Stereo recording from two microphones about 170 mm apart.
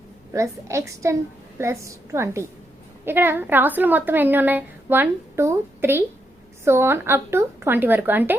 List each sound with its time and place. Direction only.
0.3 s a woman's voice: 15° right (ahead or behind)